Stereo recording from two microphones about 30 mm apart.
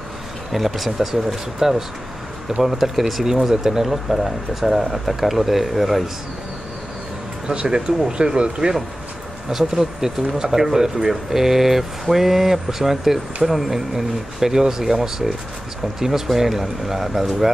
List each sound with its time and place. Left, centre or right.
0.5 s speech: centre
7.5 s speech: right
9.5 s speech: centre
16.3 s speech: centre